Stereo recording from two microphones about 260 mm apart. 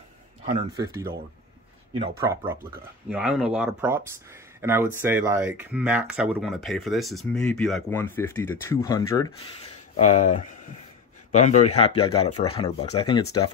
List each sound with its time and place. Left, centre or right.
2.1 s speech: centre
9.9 s speech: left